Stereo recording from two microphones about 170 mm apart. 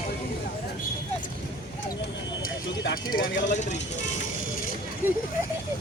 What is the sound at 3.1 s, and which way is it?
Speech, 50° left (ahead or behind).